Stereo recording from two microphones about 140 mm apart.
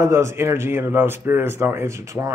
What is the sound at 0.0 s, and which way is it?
A man's voice, 20° right (ahead or behind).